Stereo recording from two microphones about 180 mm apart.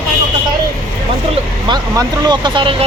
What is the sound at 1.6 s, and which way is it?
Speech, 20° right (ahead or behind).